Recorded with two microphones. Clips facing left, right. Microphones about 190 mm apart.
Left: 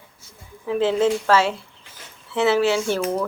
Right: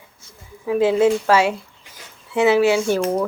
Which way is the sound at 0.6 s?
10° right (ahead or behind).